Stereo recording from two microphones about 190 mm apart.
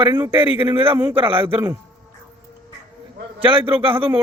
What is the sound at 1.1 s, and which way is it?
Speech, 30° right (ahead or behind).